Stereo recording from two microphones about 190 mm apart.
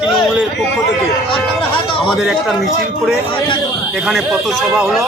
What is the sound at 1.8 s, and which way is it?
Speech, 25° left (ahead or behind).